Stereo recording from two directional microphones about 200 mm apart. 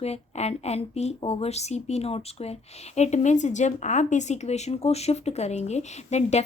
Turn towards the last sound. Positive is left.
turn(degrees=35)  # may be behind; listen again after turning